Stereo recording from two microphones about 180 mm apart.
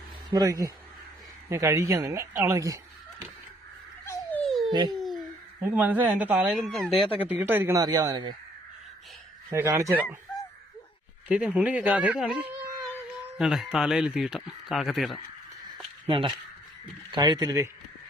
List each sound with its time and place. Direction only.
0.3 s speech: 20° right (ahead or behind)
4.0 s dog: 10° left (ahead or behind)
4.9 s a sound: centre (ahead or behind)
5.6 s speech: 10° right (ahead or behind)
7.2 s speech: 10° right (ahead or behind)
9.5 s speech: 15° right (ahead or behind)
11.3 s speech: 5° right (ahead or behind)
16.0 s speech: 30° right (ahead or behind)